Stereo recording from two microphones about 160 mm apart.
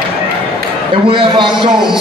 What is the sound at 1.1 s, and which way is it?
Speech, 30° right (ahead or behind).